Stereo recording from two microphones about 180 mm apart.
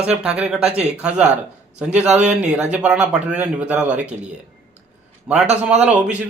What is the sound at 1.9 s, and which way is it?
Speech, 40° right (ahead or behind).